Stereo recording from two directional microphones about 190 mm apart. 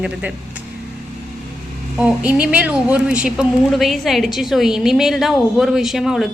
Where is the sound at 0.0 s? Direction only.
5° right (ahead or behind).